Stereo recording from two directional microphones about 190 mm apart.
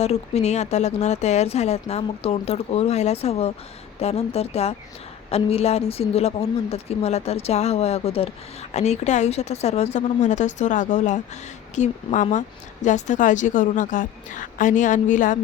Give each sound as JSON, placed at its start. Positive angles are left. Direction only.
{"t": 0.0, "sound": "speech", "side_deg": 35}